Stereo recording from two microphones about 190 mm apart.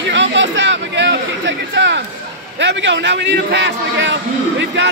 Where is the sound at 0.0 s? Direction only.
70° right (ahead or behind).